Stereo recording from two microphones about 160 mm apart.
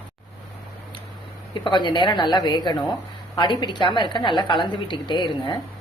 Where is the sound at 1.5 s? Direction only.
30° left (ahead or behind).